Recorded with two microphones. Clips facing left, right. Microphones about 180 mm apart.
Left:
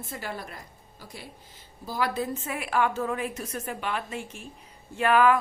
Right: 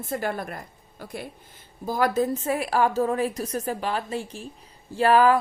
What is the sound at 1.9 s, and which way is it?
Speech, 45° right (ahead or behind).